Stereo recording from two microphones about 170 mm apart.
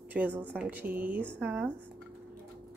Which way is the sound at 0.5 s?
10° right (ahead or behind).